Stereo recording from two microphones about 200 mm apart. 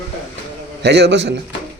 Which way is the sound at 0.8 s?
55° right (ahead or behind).